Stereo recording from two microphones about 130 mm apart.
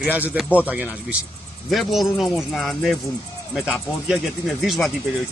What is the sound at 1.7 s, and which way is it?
Speech, centre (ahead or behind).